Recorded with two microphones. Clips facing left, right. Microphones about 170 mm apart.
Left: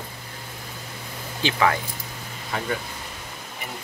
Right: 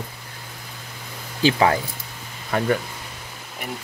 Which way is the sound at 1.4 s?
30° right (ahead or behind).